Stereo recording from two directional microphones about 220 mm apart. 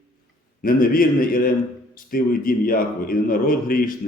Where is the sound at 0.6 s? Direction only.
40° left (ahead or behind).